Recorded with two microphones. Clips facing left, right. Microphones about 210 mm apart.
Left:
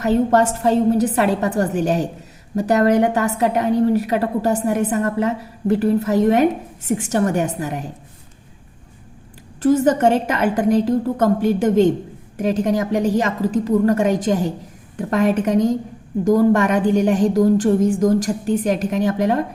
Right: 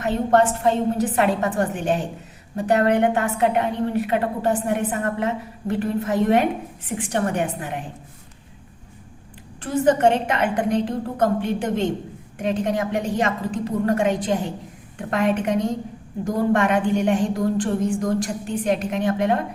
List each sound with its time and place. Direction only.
0.0 s a woman's voice: 40° left (ahead or behind)
9.6 s a woman's voice: 40° left (ahead or behind)